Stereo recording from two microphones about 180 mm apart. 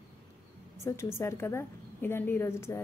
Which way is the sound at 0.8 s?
15° left (ahead or behind).